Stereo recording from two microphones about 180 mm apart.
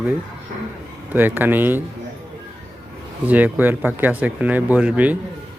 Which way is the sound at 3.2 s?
10° right (ahead or behind).